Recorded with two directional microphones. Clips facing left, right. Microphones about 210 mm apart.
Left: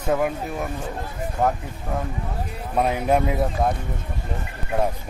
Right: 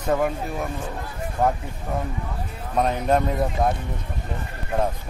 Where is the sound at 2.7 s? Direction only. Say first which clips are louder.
Left 1 dB; 10° left (ahead or behind).